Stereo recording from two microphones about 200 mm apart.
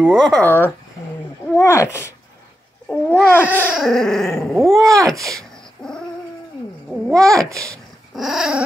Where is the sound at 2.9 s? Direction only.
5° left (ahead or behind).